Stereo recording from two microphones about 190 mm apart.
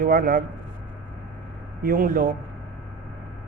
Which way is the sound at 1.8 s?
50° right (ahead or behind).